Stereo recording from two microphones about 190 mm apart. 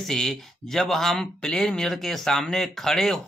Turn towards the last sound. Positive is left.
turn(degrees=0)  # may be behind; listen again after turning